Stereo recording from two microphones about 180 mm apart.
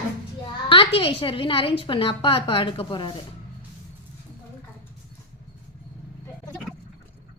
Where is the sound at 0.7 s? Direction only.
30° left (ahead or behind).